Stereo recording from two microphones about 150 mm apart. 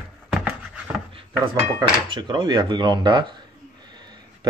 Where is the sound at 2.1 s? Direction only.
30° right (ahead or behind).